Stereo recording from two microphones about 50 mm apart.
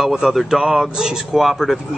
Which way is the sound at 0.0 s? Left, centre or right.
Centre.